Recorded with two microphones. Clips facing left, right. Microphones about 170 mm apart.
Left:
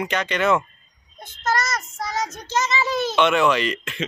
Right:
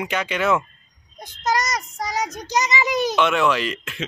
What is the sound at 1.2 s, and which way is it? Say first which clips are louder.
Child singing: right 1 dB; 15° right (ahead or behind).